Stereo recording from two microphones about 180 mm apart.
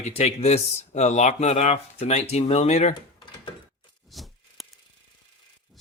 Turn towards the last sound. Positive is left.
turn(degrees=0)  # may be behind; listen again after turning